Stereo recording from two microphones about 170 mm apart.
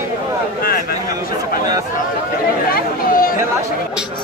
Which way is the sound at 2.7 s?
60° left (ahead or behind).